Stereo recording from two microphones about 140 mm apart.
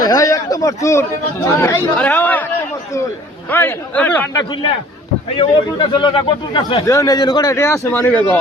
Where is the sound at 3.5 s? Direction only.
15° left (ahead or behind).